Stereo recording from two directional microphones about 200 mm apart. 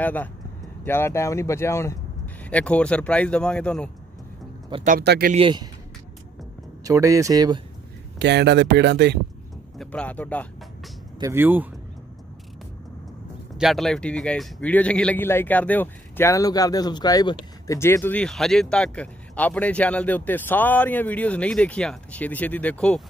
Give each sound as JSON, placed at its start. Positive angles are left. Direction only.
{"t": 0.0, "sound": "a man's voice", "side_deg": 10}
{"t": 4.8, "sound": "speech", "side_deg": -50}
{"t": 5.3, "sound": "speech", "side_deg": -25}
{"t": 6.8, "sound": "speech", "side_deg": -15}
{"t": 8.2, "sound": "speech", "side_deg": -60}
{"t": 9.8, "sound": "a man's voice", "side_deg": 5}
{"t": 11.1, "sound": "speech", "side_deg": -15}
{"t": 13.6, "sound": "a man's voice", "side_deg": 0}